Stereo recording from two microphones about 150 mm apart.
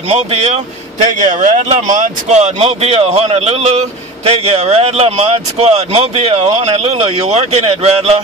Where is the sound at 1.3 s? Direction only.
55° right (ahead or behind).